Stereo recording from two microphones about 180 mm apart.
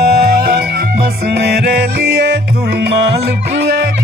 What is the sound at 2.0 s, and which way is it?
Music, 65° right (ahead or behind).